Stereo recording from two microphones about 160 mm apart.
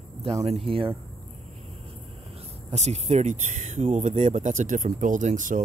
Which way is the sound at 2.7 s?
45° right (ahead or behind).